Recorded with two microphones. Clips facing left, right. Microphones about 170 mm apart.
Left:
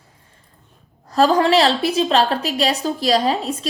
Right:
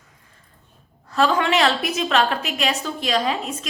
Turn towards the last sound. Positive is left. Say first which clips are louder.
# left 5 dB
turn(degrees=35)  # may be behind; listen again after turning